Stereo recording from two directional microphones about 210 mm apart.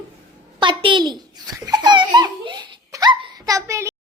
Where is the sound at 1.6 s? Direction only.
20° right (ahead or behind).